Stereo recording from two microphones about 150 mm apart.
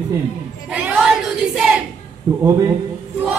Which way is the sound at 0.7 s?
10° right (ahead or behind).